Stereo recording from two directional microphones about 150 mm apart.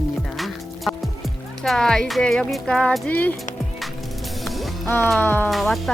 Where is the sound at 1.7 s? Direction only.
5° left (ahead or behind).